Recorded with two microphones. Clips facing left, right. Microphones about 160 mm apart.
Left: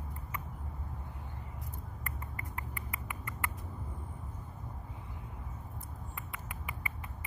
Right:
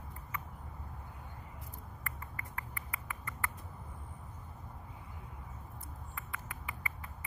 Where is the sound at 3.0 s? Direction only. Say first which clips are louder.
Even; 20° left (ahead or behind).